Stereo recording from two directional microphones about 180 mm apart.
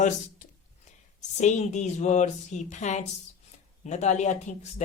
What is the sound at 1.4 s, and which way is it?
Speech, 40° left (ahead or behind).